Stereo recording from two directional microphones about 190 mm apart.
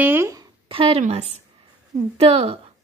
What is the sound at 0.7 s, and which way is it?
A woman's voice, 30° right (ahead or behind).